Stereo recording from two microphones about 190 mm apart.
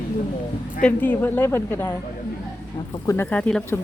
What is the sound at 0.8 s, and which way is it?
Speech, 10° left (ahead or behind).